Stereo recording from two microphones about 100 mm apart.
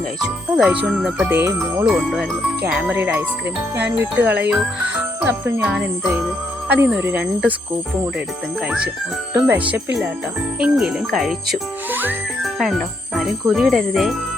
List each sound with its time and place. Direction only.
0.5 s speech: 10° right (ahead or behind)
1.3 s speech: 25° right (ahead or behind)
1.9 s speech: centre (ahead or behind)
2.9 s speech: 20° right (ahead or behind)
9.3 s speech: 20° right (ahead or behind)
10.6 s speech: 5° right (ahead or behind)
11.9 s speech: 20° right (ahead or behind)
12.4 s speech: centre (ahead or behind)